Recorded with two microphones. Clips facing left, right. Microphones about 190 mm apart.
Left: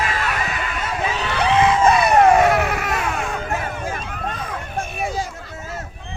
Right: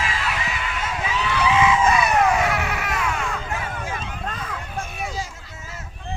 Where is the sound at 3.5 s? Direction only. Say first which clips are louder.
Left 4 dB; 45° left (ahead or behind).